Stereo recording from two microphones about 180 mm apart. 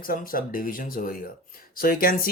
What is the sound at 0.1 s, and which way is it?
Speech, 50° left (ahead or behind).